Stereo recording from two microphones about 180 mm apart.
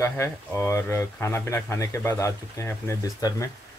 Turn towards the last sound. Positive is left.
turn(degrees=20)  # may be behind; listen again after turning